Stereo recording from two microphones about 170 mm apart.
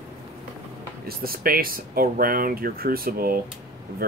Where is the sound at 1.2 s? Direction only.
60° right (ahead or behind).